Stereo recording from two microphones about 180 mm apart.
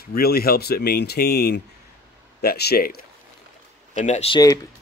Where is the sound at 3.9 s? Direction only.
40° left (ahead or behind).